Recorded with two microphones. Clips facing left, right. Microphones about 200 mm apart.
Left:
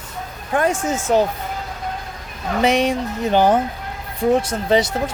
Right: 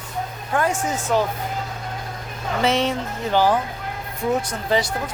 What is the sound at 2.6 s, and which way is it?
Speech, 15° left (ahead or behind).